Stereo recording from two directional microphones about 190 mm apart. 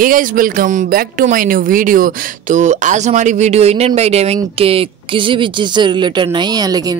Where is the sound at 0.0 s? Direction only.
45° right (ahead or behind).